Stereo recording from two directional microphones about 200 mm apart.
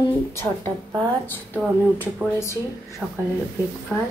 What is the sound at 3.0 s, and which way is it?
Speech, centre (ahead or behind).